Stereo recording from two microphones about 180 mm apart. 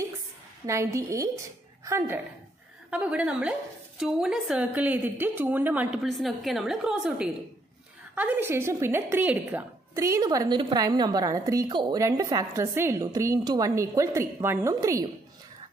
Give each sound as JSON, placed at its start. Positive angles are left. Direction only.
{"t": 0.7, "sound": "a woman's voice", "side_deg": -15}